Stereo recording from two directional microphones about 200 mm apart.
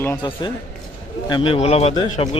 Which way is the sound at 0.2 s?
20° left (ahead or behind).